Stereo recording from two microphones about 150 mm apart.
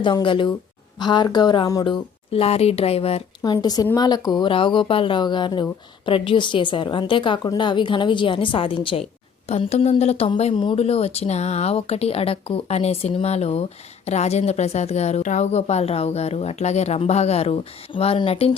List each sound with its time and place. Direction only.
0.0 s a woman's voice: 30° left (ahead or behind)
3.4 s a woman's voice: 25° left (ahead or behind)